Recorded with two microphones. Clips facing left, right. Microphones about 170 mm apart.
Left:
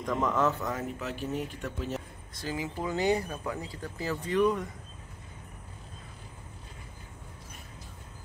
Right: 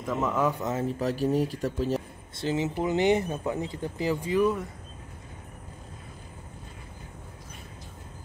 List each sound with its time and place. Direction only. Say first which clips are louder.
0.0 s speech: right 1 dB; 5° right (ahead or behind)
0.7 s speech: right 6 dB; 30° right (ahead or behind); by 4.6 s 5° right (ahead or behind)